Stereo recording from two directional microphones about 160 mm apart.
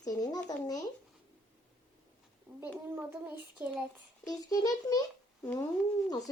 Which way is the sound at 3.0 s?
10° right (ahead or behind).